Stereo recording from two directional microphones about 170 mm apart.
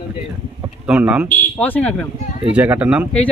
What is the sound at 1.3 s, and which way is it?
Speech, 10° left (ahead or behind).